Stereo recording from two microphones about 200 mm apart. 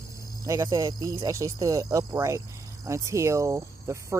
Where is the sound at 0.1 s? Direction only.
15° right (ahead or behind).